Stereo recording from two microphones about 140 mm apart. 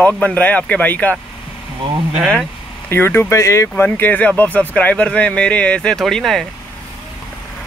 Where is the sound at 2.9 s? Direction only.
15° left (ahead or behind).